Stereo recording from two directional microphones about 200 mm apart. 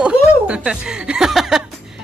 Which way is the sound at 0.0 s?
5° right (ahead or behind).